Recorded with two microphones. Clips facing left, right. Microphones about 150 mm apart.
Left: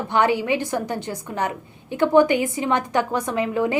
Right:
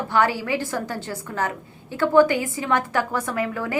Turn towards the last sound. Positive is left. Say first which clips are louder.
# left 4 dB
turn(degrees=20)  # may be behind; listen again after turning